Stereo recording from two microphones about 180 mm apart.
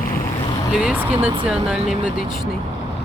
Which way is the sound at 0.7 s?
5° right (ahead or behind).